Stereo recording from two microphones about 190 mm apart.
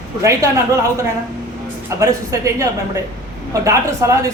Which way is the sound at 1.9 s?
20° right (ahead or behind).